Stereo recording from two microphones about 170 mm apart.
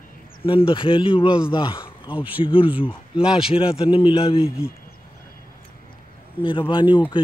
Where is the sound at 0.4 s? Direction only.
30° left (ahead or behind).